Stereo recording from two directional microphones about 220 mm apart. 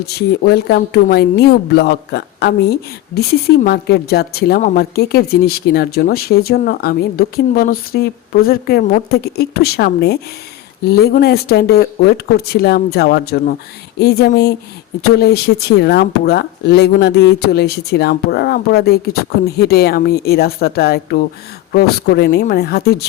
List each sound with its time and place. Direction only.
0.0 s a woman's voice: 50° left (ahead or behind)